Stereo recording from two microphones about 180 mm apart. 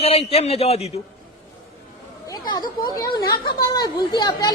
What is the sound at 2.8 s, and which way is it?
Speech, 20° left (ahead or behind).